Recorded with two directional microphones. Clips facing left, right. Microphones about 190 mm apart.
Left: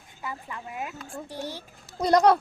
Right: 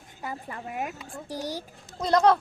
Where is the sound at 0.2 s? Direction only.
40° right (ahead or behind).